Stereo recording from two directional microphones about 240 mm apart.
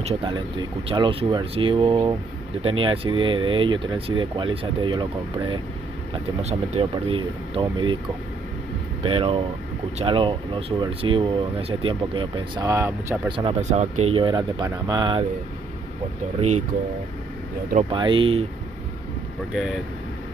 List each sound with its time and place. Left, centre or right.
0.0 s speech: centre
6.7 s speech: right
9.0 s speech: right
13.4 s speech: right
17.7 s speech: centre
19.5 s speech: centre